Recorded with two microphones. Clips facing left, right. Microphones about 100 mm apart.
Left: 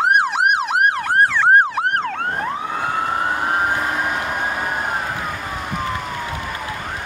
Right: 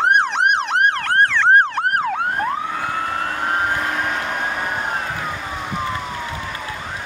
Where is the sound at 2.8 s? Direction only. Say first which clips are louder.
Left 2 dB; 15° left (ahead or behind).